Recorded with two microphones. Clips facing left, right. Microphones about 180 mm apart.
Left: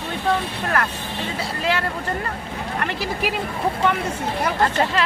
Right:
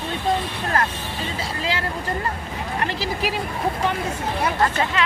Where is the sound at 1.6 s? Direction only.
60° left (ahead or behind).